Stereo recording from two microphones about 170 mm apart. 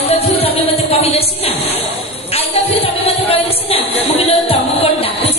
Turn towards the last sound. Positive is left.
turn(degrees=35)  # may be behind; listen again after turning